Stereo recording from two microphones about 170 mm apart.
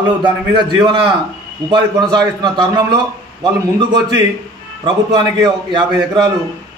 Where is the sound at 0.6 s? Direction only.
25° right (ahead or behind).